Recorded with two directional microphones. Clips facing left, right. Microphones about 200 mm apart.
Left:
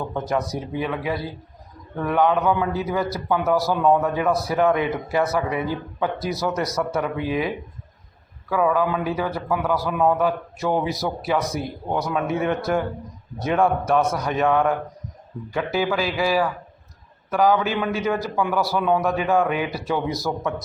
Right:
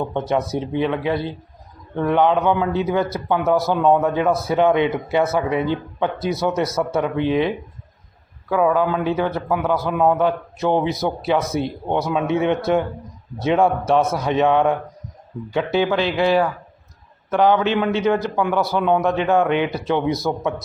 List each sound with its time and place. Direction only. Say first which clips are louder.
0.1 s a man's voice: right 3 dB; 25° right (ahead or behind)